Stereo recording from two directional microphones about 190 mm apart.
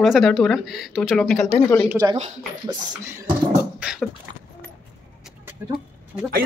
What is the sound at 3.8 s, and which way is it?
Beatboxing, 5° right (ahead or behind).